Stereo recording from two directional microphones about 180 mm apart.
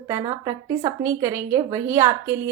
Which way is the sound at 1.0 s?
10° right (ahead or behind).